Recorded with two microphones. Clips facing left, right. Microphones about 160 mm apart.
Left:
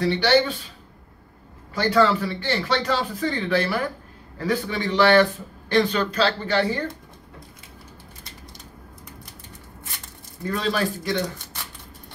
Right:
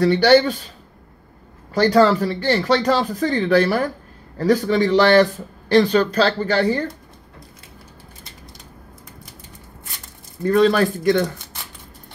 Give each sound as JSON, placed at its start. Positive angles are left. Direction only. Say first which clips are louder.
{"t": 0.0, "sound": "speech", "louder": "right 6 dB", "side_deg": -40}
{"t": 1.7, "sound": "speech", "louder": "right 5 dB", "side_deg": -40}
{"t": 10.4, "sound": "speech", "louder": "right 9 dB", "side_deg": -45}